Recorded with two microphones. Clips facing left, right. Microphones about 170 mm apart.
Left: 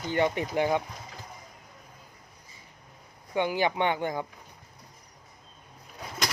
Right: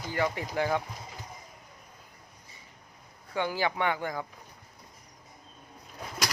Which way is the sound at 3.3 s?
20° left (ahead or behind).